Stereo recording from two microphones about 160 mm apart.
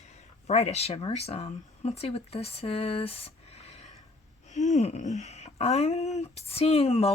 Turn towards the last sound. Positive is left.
turn(degrees=40)  # may be behind; listen again after turning